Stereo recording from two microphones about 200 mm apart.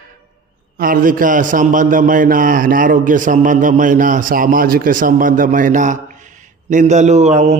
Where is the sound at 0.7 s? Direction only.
45° right (ahead or behind).